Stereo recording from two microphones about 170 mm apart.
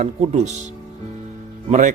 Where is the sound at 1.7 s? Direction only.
50° right (ahead or behind).